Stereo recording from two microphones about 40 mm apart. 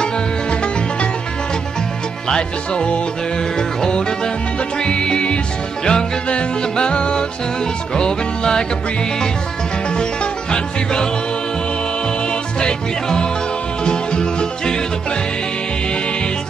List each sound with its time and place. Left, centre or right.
2.2 s music: centre
10.5 s music: centre
12.5 s music: left